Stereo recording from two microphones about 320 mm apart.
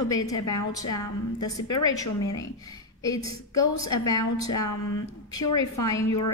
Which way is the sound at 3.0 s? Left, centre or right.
Centre.